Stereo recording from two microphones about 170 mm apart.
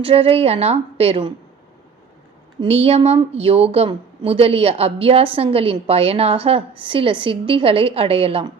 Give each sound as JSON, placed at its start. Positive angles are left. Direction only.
{"t": 0.0, "sound": "a woman's voice", "side_deg": -35}
{"t": 2.6, "sound": "a woman's voice", "side_deg": -35}